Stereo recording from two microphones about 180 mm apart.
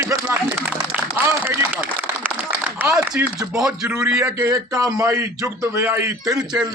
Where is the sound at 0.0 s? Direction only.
15° right (ahead or behind).